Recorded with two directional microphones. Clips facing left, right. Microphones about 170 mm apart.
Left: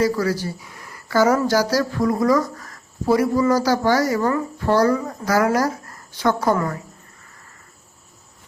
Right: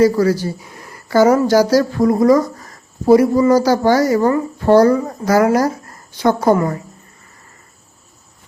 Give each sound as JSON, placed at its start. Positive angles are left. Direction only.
{"t": 0.2, "sound": "speech", "side_deg": -25}